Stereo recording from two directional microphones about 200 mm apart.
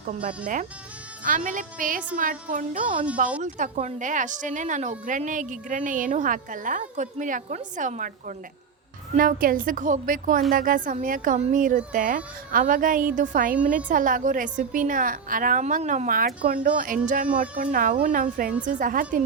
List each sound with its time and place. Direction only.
0.1 s a woman's voice: 40° right (ahead or behind)